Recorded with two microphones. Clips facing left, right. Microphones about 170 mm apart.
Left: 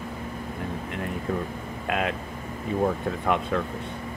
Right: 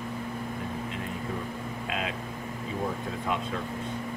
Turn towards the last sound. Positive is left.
turn(degrees=55)  # may be behind; listen again after turning